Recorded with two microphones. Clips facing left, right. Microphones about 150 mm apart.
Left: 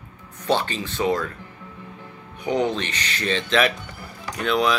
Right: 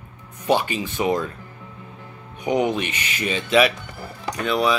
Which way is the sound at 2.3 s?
15° right (ahead or behind).